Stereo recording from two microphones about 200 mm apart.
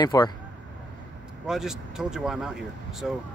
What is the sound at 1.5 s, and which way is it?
Speech, centre (ahead or behind).